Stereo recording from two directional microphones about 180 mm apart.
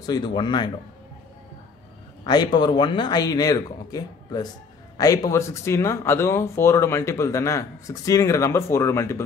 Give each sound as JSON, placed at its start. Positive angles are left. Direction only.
{"t": 0.0, "sound": "speech", "side_deg": 25}
{"t": 2.2, "sound": "speech", "side_deg": 25}